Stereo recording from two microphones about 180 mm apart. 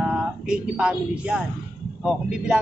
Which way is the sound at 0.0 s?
5° right (ahead or behind).